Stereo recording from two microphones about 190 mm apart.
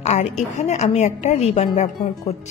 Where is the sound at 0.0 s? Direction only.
35° left (ahead or behind).